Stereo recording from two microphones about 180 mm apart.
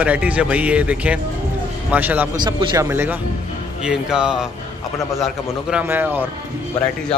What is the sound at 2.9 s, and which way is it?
A man's voice, 10° right (ahead or behind).